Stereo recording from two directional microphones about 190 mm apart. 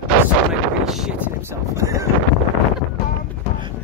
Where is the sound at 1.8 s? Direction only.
15° right (ahead or behind).